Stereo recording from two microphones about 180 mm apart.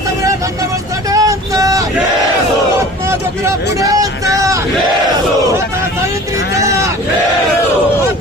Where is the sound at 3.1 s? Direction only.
15° right (ahead or behind).